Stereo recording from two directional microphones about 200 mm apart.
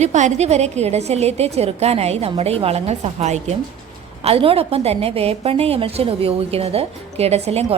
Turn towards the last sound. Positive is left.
turn(degrees=-30)  # may be behind; listen again after turning